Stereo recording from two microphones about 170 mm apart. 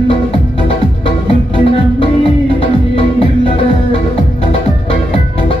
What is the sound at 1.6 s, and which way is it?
Music, 30° left (ahead or behind).